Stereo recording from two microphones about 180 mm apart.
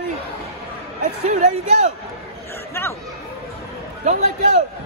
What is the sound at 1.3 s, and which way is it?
Speech, 40° right (ahead or behind).